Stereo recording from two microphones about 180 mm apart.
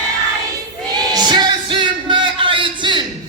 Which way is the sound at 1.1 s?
25° right (ahead or behind).